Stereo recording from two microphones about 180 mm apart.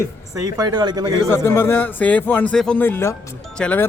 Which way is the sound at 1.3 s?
15° left (ahead or behind).